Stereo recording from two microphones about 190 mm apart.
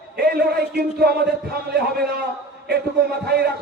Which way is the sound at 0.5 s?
55° right (ahead or behind).